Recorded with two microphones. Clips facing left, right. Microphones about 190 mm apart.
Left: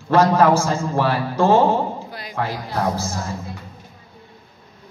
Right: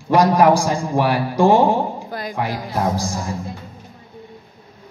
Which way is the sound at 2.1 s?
45° right (ahead or behind).